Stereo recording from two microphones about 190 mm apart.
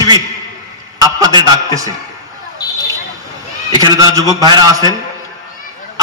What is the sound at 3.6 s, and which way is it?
A man's voice, 20° right (ahead or behind).